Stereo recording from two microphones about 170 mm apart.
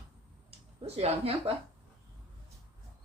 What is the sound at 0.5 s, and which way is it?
Speech, 35° right (ahead or behind).